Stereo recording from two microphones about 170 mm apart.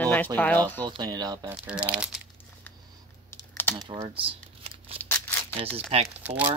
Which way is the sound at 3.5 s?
10° left (ahead or behind).